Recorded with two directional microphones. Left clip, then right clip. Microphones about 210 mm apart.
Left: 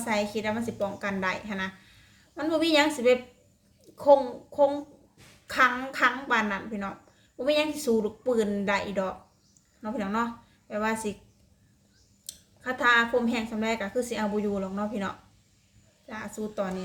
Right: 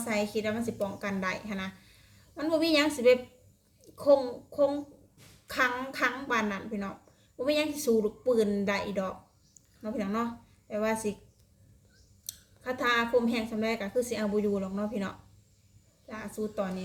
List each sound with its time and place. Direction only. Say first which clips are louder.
0.0 s a woman's voice: left 2 dB; centre (ahead or behind)
12.2 s a woman's voice: left 3 dB; centre (ahead or behind)